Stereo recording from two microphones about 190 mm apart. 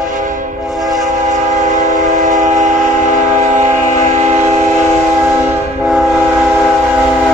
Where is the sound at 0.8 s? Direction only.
20° right (ahead or behind).